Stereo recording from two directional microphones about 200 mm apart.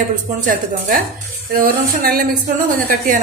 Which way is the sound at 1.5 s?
45° right (ahead or behind).